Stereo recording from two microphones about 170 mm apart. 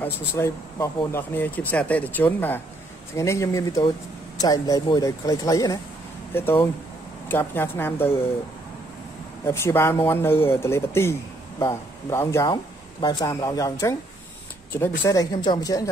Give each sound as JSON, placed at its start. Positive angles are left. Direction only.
{"t": 0.0, "sound": "speech", "side_deg": 15}
{"t": 9.5, "sound": "speech", "side_deg": 15}
{"t": 15.0, "sound": "speech", "side_deg": 20}